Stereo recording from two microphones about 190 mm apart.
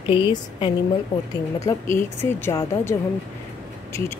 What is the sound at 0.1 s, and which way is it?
Speech, 25° left (ahead or behind).